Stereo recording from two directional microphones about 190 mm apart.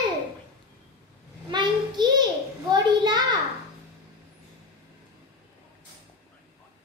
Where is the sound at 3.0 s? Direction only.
25° right (ahead or behind).